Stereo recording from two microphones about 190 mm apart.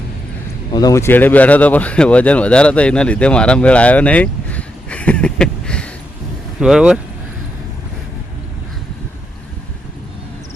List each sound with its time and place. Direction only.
0.7 s speech: 20° left (ahead or behind); by 7.0 s centre (ahead or behind)